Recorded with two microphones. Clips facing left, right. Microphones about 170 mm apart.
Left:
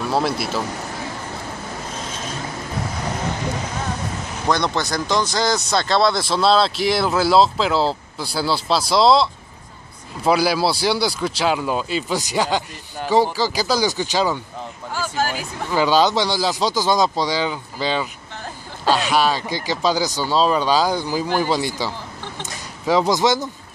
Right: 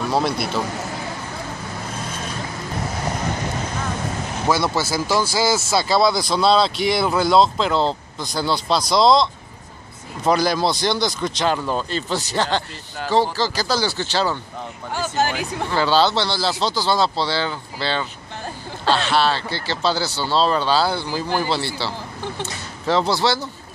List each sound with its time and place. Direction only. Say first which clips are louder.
0.1 s speech: left 1 dB; centre (ahead or behind)
4.5 s speech: even; 5° right (ahead or behind); by 14.4 s 10° left (ahead or behind)
15.0 s speech: right 2 dB; 20° right (ahead or behind)
15.3 s speech: even; 10° left (ahead or behind)